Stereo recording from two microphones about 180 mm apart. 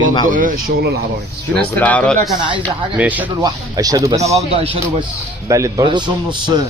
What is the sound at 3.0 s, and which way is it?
Speech, 10° right (ahead or behind).